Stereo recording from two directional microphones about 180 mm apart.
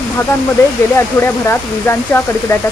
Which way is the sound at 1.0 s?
10° left (ahead or behind).